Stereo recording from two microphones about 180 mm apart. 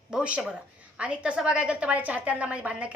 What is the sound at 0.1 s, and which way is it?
A woman's voice, 5° right (ahead or behind).